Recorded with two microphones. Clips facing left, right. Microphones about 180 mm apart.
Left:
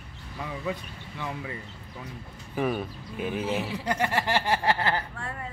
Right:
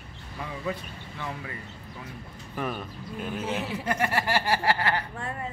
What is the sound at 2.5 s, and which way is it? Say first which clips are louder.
Speech: left 5 dB; 5° left (ahead or behind).